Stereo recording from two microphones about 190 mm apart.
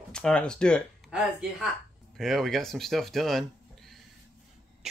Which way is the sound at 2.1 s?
Centre (ahead or behind).